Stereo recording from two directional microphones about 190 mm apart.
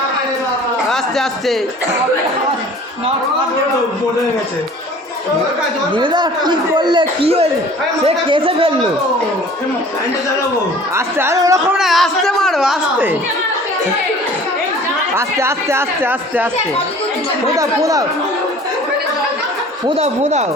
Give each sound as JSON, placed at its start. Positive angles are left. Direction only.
{"t": 0.9, "sound": "a man's voice", "side_deg": 0}
{"t": 5.9, "sound": "speech", "side_deg": -25}
{"t": 10.9, "sound": "speech", "side_deg": -15}
{"t": 11.8, "sound": "a child's voice", "side_deg": 0}
{"t": 15.1, "sound": "speech", "side_deg": -15}
{"t": 17.5, "sound": "speech", "side_deg": -15}
{"t": 20.0, "sound": "speech", "side_deg": -35}